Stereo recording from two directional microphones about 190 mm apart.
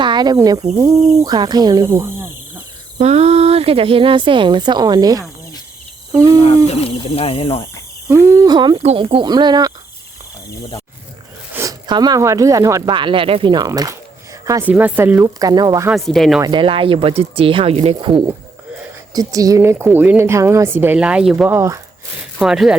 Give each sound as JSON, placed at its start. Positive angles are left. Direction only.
{"t": 0.0, "sound": "speech", "side_deg": -25}
{"t": 3.0, "sound": "speech", "side_deg": -35}
{"t": 6.1, "sound": "cricket", "side_deg": -15}
{"t": 6.8, "sound": "speech", "side_deg": 30}
{"t": 8.0, "sound": "speech", "side_deg": -15}
{"t": 11.5, "sound": "speech", "side_deg": -20}
{"t": 15.9, "sound": "speech", "side_deg": 0}
{"t": 16.4, "sound": "speech", "side_deg": -25}
{"t": 22.4, "sound": "speech", "side_deg": 0}